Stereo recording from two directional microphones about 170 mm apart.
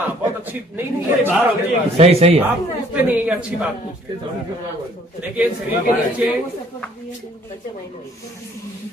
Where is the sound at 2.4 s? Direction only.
10° right (ahead or behind).